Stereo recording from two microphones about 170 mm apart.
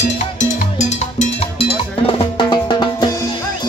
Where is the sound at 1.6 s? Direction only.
30° left (ahead or behind).